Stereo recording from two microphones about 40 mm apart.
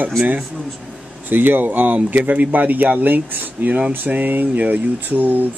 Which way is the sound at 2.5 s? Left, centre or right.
Right.